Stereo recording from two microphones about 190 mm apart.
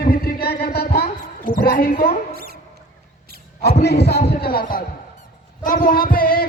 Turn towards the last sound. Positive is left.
turn(degrees=50)  # may be behind; listen again after turning